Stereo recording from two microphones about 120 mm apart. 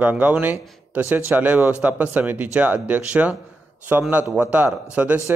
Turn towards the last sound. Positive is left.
turn(degrees=-10)  # may be behind; listen again after turning